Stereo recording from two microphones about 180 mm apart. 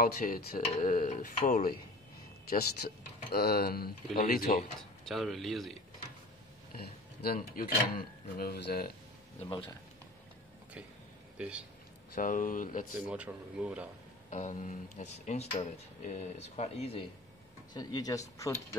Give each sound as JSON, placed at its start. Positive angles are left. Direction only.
{"t": 0.0, "sound": "speech", "side_deg": 55}
{"t": 5.0, "sound": "speech", "side_deg": 0}
{"t": 6.8, "sound": "speech", "side_deg": 60}
{"t": 9.4, "sound": "speech", "side_deg": 30}
{"t": 11.3, "sound": "speech", "side_deg": -5}
{"t": 12.2, "sound": "speech", "side_deg": 50}
{"t": 13.1, "sound": "speech", "side_deg": -5}
{"t": 14.3, "sound": "speech", "side_deg": 45}
{"t": 17.7, "sound": "speech", "side_deg": 20}